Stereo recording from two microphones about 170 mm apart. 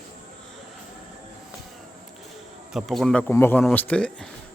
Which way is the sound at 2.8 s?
Centre (ahead or behind).